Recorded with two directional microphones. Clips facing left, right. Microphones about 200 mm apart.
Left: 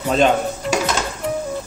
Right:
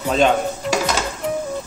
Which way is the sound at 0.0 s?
Centre (ahead or behind).